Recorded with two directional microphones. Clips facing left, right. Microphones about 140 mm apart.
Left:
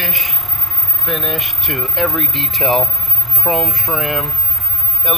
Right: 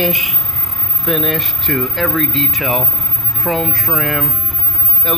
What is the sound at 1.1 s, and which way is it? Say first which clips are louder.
Speech: right 5 dB; centre (ahead or behind).